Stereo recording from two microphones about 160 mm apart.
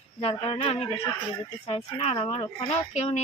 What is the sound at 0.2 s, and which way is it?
Speech, 35° left (ahead or behind).